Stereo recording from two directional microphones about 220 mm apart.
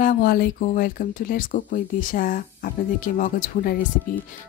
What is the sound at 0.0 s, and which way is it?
Speech, 40° left (ahead or behind).